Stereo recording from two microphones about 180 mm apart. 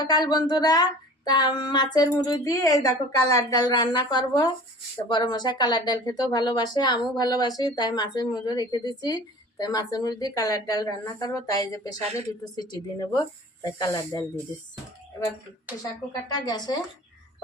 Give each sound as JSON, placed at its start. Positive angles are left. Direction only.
{"t": 0.0, "sound": "speech", "side_deg": 20}
{"t": 16.3, "sound": "speech", "side_deg": 20}